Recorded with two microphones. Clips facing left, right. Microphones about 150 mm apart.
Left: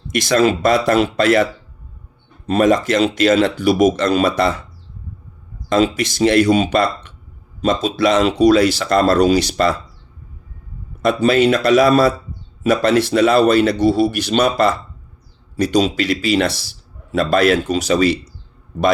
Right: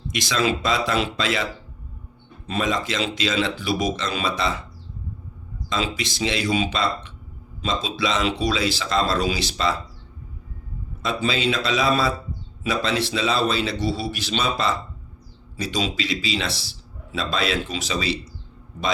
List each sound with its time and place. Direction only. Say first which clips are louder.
0.1 s speech: left 8 dB; 55° left (ahead or behind)
2.5 s speech: left 10 dB; 55° left (ahead or behind)
5.6 s speech: left 11 dB; 55° left (ahead or behind)
9.5 s speech: left 7 dB; 60° left (ahead or behind)
11.3 s speech: left 10 dB; 55° left (ahead or behind)